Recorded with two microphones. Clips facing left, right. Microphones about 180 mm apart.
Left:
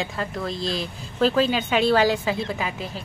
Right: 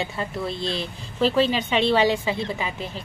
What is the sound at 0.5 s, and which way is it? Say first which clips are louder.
Speech: left 1 dB; 40° left (ahead or behind).